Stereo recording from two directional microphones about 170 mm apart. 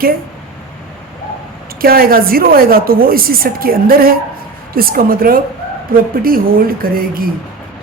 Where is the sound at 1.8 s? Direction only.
60° right (ahead or behind).